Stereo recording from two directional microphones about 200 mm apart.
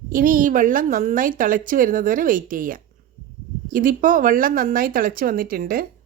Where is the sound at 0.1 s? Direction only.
45° right (ahead or behind).